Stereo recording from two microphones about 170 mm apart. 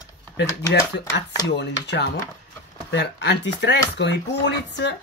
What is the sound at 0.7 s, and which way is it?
Speech, 90° left.